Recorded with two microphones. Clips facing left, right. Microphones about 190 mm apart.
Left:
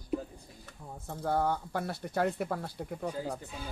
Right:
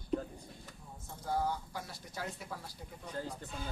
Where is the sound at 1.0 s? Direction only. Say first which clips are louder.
Left 5 dB; 60° left (ahead or behind).